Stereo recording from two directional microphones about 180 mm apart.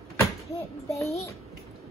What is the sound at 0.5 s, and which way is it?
Speech, 15° left (ahead or behind).